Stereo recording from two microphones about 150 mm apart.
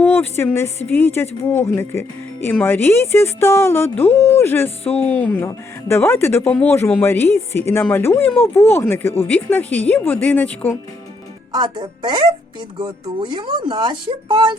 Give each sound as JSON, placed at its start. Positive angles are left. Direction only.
{"t": 0.0, "sound": "speech", "side_deg": 15}
{"t": 11.5, "sound": "speech", "side_deg": -30}